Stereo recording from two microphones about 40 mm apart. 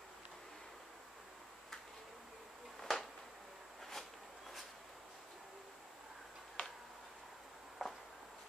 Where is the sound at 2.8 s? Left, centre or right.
Centre.